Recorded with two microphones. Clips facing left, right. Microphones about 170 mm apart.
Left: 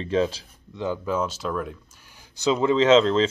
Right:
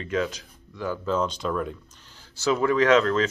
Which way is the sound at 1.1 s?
5° left (ahead or behind).